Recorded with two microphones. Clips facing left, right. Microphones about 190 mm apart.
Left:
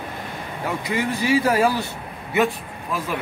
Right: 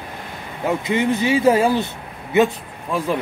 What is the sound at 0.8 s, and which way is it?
Speech, 25° right (ahead or behind).